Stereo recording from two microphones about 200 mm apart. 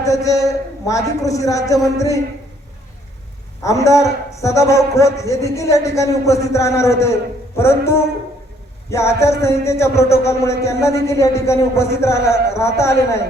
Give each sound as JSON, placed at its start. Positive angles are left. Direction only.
{"t": 0.9, "sound": "a man's voice", "side_deg": 15}
{"t": 3.6, "sound": "a man's voice", "side_deg": 15}